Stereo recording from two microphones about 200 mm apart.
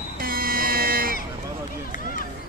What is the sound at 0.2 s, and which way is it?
Music, 45° right (ahead or behind).